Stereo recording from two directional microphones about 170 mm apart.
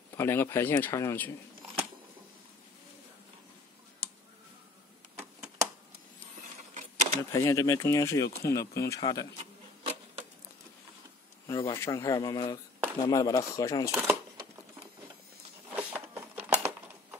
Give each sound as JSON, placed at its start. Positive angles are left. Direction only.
{"t": 0.1, "sound": "speech", "side_deg": 15}
{"t": 6.7, "sound": "a sound", "side_deg": -45}
{"t": 7.3, "sound": "speech", "side_deg": 20}
{"t": 9.4, "sound": "printer", "side_deg": -40}
{"t": 11.4, "sound": "speech", "side_deg": 20}
{"t": 15.7, "sound": "a sound", "side_deg": -10}